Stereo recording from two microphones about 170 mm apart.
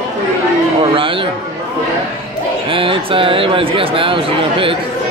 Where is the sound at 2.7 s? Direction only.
30° right (ahead or behind).